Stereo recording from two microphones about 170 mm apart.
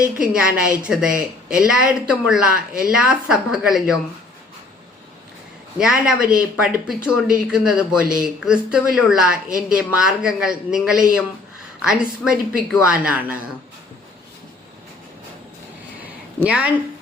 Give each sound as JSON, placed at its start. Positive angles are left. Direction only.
{"t": 0.0, "sound": "speech", "side_deg": -5}
{"t": 5.8, "sound": "speech", "side_deg": -5}
{"t": 16.4, "sound": "a woman's voice", "side_deg": -10}